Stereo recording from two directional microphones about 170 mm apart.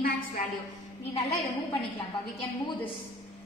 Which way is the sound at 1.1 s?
35° left (ahead or behind).